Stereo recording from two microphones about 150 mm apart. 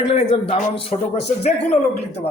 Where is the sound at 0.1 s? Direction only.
45° left (ahead or behind).